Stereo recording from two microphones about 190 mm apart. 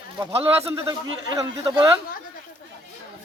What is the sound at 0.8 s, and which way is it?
A man's voice, 15° right (ahead or behind).